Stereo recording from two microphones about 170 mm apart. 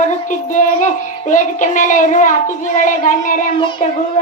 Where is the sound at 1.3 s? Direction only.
50° left (ahead or behind).